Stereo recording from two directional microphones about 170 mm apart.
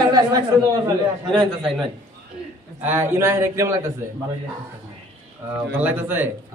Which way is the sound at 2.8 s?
10° right (ahead or behind).